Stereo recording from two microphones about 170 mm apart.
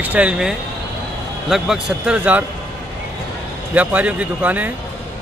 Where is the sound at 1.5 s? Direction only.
5° right (ahead or behind).